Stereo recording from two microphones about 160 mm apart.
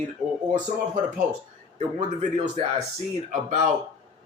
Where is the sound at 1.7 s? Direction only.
45° right (ahead or behind).